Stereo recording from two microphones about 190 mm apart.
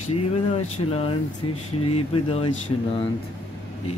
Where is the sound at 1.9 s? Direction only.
30° left (ahead or behind).